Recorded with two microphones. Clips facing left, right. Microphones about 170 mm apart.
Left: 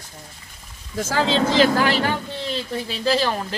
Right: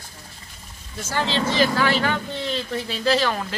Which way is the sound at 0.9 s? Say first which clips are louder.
Left 4 dB; 90° left.